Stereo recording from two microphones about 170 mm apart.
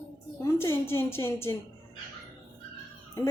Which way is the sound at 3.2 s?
20° left (ahead or behind).